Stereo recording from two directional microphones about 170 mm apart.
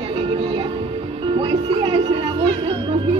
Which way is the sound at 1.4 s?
30° right (ahead or behind).